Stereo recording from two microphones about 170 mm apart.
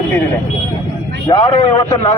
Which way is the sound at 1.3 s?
30° left (ahead or behind).